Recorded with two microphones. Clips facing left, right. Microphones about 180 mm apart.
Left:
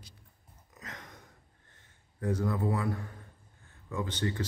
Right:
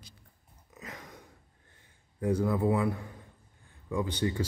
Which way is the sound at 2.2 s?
10° right (ahead or behind).